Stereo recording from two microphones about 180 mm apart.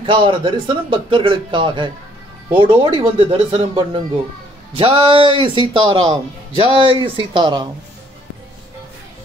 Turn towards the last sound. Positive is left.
turn(degrees=-25)  # may be behind; listen again after turning